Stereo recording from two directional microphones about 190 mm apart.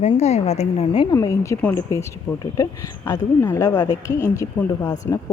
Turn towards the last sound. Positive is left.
turn(degrees=15)  # may be behind; listen again after turning